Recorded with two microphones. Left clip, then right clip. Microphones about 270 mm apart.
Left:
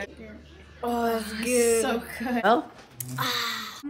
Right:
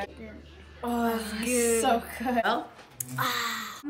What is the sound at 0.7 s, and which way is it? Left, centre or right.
Speech, centre.